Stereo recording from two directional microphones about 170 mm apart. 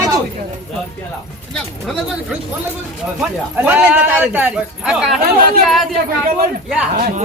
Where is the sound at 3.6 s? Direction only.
10° right (ahead or behind).